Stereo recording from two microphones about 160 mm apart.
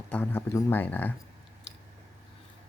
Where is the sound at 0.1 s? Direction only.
10° left (ahead or behind).